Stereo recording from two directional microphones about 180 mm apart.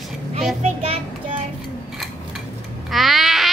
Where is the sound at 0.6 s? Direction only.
35° right (ahead or behind).